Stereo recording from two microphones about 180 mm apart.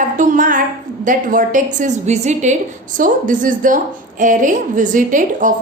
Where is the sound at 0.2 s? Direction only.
45° right (ahead or behind).